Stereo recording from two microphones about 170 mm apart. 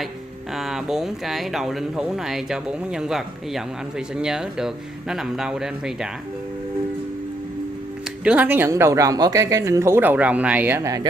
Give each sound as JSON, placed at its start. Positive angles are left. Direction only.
{"t": 0.6, "sound": "speech", "side_deg": 0}
{"t": 8.2, "sound": "speech", "side_deg": -5}